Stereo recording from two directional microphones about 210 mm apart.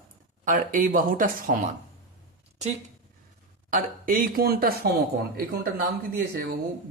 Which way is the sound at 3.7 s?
40° right (ahead or behind).